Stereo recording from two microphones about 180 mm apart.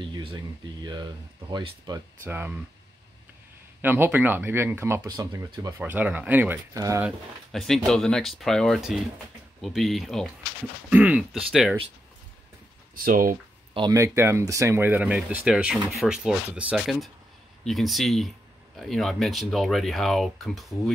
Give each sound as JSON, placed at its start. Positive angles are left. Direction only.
{"t": 0.0, "sound": "a sound", "side_deg": -25}
{"t": 1.5, "sound": "speech", "side_deg": -25}
{"t": 2.2, "sound": "speech", "side_deg": -10}
{"t": 3.8, "sound": "speech", "side_deg": -10}
{"t": 7.1, "sound": "speech", "side_deg": 0}
{"t": 12.9, "sound": "speech", "side_deg": -50}
{"t": 13.7, "sound": "speech", "side_deg": -20}